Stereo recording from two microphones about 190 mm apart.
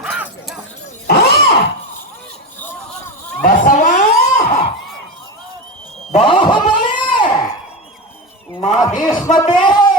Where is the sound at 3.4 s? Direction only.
40° left (ahead or behind).